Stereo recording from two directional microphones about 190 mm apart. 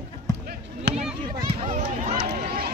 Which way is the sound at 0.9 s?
60° right (ahead or behind).